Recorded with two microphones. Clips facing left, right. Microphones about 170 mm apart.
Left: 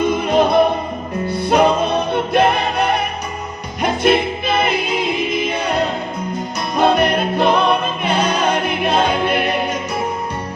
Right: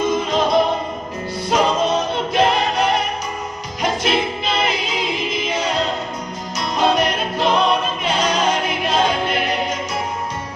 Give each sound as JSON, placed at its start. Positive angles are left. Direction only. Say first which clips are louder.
{"t": 0.0, "sound": "music", "louder": "left 3 dB", "side_deg": 60}